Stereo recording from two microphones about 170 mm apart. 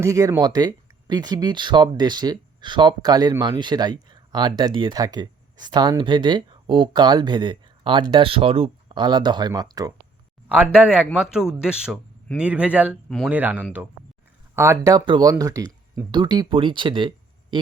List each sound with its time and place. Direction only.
0.0 s speech: 20° right (ahead or behind)
10.5 s speech: 5° right (ahead or behind)
13.1 s speech: centre (ahead or behind)
13.3 s speech: 10° right (ahead or behind); by 17.6 s 30° right (ahead or behind)